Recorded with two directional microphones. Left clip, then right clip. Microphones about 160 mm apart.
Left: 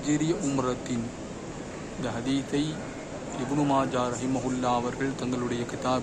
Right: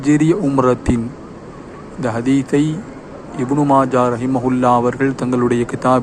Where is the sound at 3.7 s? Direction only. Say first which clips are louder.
Right 13 dB; 30° right (ahead or behind).